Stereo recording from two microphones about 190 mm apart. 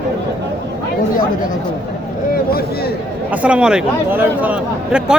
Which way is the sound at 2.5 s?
55° left (ahead or behind).